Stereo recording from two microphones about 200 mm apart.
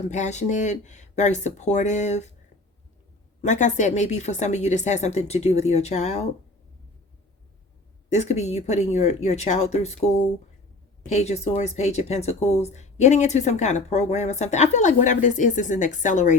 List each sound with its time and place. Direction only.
0.1 s speech: 35° left (ahead or behind)
3.4 s speech: 35° left (ahead or behind)
8.1 s speech: 35° left (ahead or behind)